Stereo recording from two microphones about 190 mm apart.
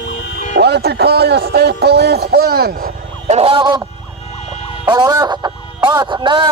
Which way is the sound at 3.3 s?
30° right (ahead or behind).